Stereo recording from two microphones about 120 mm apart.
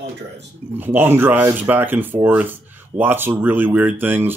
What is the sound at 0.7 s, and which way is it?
Speech, 15° right (ahead or behind).